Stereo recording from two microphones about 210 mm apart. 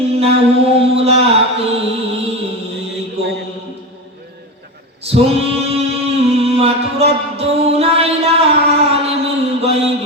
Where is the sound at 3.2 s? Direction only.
30° right (ahead or behind).